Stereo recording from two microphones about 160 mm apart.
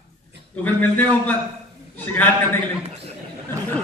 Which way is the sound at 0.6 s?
10° left (ahead or behind).